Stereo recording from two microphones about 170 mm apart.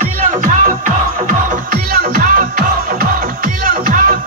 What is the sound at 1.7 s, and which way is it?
Music, 55° right (ahead or behind).